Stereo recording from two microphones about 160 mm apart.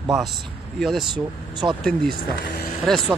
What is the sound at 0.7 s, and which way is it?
Speech, centre (ahead or behind).